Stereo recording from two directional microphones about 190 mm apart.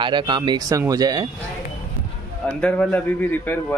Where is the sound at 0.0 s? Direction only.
25° right (ahead or behind).